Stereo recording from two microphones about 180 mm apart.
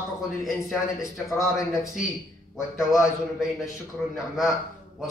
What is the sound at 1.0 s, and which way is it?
Speech, 20° left (ahead or behind).